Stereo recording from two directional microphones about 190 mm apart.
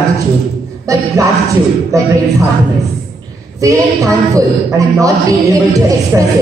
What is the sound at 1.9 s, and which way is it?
Speech, 15° right (ahead or behind).